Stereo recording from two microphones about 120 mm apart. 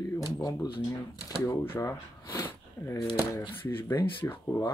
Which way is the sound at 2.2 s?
25° left (ahead or behind).